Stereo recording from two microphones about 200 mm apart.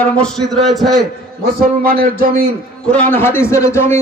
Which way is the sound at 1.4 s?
50° right (ahead or behind).